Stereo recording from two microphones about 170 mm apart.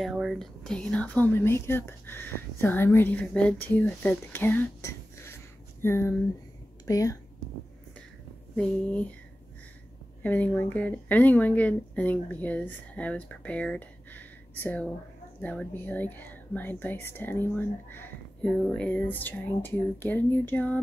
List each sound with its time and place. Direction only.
0.0 s speech: centre (ahead or behind); by 7.2 s 20° left (ahead or behind)
8.5 s speech: 10° left (ahead or behind)
10.2 s speech: 10° left (ahead or behind)